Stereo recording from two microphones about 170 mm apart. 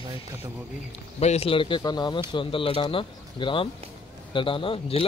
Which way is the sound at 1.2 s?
35° left (ahead or behind).